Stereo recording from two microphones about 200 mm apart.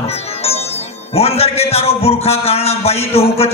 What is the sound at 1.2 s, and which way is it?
A man's voice, 30° left (ahead or behind).